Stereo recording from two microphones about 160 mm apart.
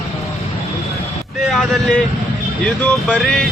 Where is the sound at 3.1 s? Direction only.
Centre (ahead or behind).